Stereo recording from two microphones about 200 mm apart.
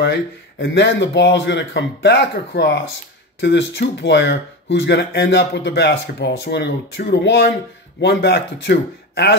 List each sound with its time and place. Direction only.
0.0 s speech: 60° left (ahead or behind)